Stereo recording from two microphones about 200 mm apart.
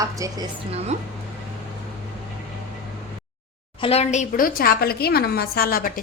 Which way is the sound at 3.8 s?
30° left (ahead or behind).